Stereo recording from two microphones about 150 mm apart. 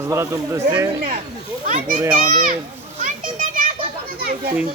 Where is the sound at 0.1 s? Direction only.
20° right (ahead or behind).